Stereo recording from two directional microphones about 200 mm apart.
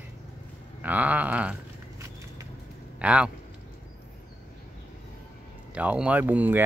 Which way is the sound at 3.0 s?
5° right (ahead or behind).